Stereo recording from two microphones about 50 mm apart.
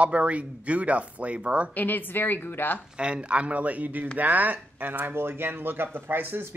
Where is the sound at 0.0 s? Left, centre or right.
Right.